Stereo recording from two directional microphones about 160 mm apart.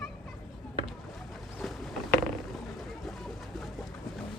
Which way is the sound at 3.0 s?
Centre (ahead or behind).